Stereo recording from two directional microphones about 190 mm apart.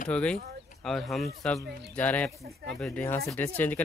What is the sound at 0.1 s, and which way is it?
Speech, 5° left (ahead or behind).